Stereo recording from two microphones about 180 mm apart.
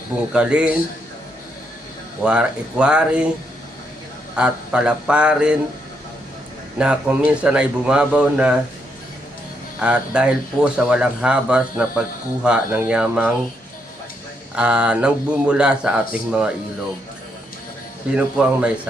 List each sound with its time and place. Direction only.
0.3 s a man's voice: 5° right (ahead or behind)
2.2 s a man's voice: 5° right (ahead or behind)
4.4 s a man's voice: 5° right (ahead or behind)
6.7 s a man's voice: 5° right (ahead or behind)
9.8 s a man's voice: 5° right (ahead or behind)
14.5 s a man's voice: 5° right (ahead or behind)
18.1 s a man's voice: 5° right (ahead or behind)